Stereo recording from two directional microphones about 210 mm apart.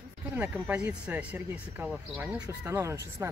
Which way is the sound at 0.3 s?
10° right (ahead or behind).